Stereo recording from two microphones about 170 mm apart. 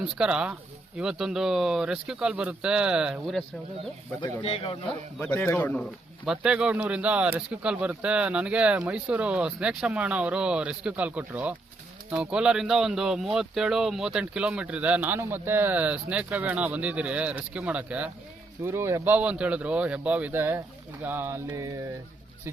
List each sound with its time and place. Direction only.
0.0 s speech: 5° right (ahead or behind)
4.4 s a man's voice: 35° left (ahead or behind)
4.9 s speech: 10° left (ahead or behind); by 21.7 s 15° right (ahead or behind)